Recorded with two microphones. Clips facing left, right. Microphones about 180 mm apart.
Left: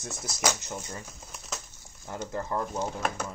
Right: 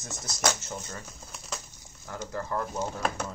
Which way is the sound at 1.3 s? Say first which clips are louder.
Even; centre (ahead or behind).